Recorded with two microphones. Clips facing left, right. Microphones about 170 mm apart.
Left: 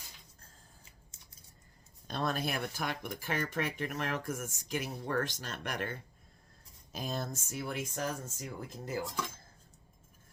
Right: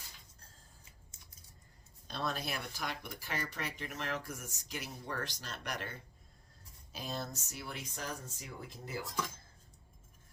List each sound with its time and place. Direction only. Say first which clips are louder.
2.0 s speech: left 4 dB; 50° left (ahead or behind)
6.9 s speech: left 4 dB; 50° left (ahead or behind)